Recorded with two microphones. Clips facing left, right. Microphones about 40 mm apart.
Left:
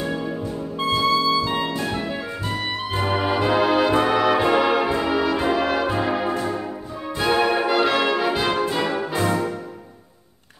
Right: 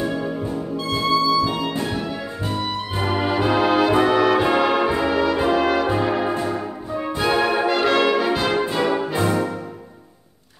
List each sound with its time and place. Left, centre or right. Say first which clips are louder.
0.0 s music: right 2 dB; centre
1.3 s music: right 2 dB; left
3.0 s music: right 1 dB; centre
8.5 s brass instrument: right 2 dB; centre